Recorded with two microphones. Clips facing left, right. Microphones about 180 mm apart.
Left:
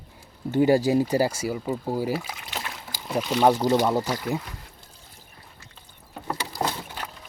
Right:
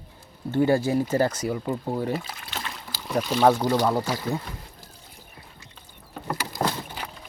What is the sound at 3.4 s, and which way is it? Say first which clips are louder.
Speech: even; 15° left (ahead or behind).